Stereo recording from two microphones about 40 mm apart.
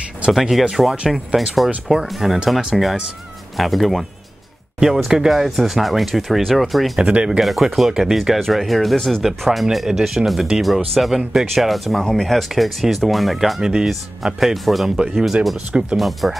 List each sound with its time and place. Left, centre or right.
0.3 s speech: centre
4.7 s speech: centre
7.0 s speech: right
7.2 s speech: centre
13.6 s speech: centre
13.8 s speech: centre
16.0 s speech: centre